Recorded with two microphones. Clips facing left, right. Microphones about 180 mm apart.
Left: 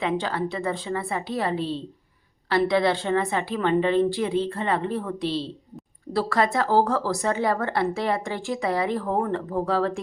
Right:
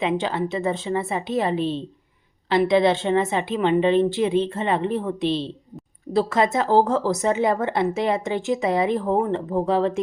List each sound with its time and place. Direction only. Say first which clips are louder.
0.0 s speech: right 2 dB; 20° right (ahead or behind)